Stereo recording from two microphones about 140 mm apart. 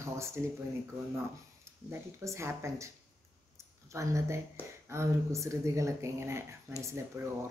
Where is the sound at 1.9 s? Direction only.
20° right (ahead or behind).